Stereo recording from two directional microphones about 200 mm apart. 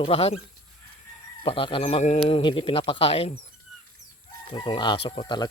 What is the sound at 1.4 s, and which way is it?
Speech, 25° left (ahead or behind).